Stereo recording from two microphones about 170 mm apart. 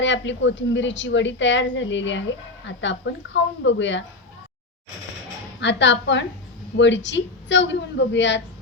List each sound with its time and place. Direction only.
0.0 s a woman's voice: 90° left
5.5 s a woman's voice: 90° left